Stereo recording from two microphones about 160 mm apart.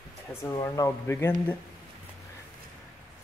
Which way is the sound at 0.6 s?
20° left (ahead or behind).